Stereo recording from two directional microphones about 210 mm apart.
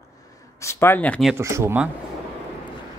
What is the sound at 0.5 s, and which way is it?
Speech, 10° left (ahead or behind).